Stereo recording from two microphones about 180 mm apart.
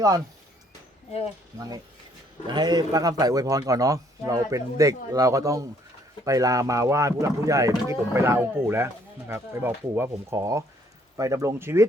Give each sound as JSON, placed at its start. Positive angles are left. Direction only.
{"t": 1.5, "sound": "a man's voice", "side_deg": -20}